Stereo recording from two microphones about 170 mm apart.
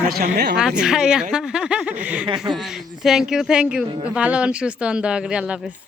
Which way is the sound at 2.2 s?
25° right (ahead or behind).